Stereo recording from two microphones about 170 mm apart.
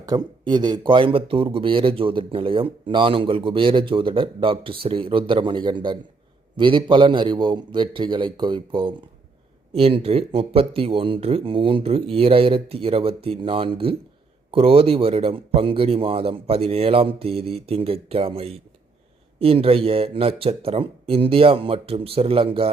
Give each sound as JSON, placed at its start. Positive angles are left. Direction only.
{"t": 0.0, "sound": "a man's voice", "side_deg": -25}